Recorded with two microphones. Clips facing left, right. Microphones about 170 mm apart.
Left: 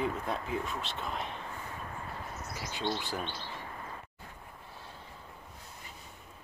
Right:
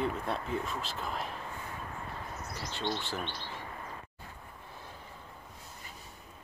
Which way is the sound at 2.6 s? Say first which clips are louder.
Left 1 dB; 10° left (ahead or behind).